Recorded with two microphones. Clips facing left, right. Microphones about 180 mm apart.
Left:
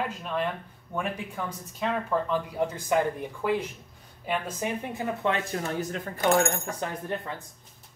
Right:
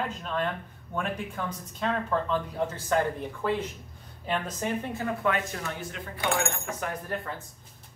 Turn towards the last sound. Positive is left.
turn(degrees=30)  # may be behind; listen again after turning